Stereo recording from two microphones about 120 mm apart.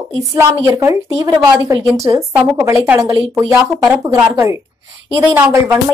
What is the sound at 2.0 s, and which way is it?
Speech, 25° right (ahead or behind).